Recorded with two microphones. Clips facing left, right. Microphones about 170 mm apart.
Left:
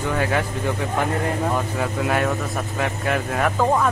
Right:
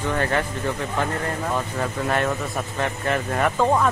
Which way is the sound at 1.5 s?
5° left (ahead or behind).